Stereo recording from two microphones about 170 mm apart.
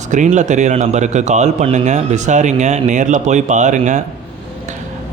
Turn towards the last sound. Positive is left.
turn(degrees=-45)  # may be behind; listen again after turning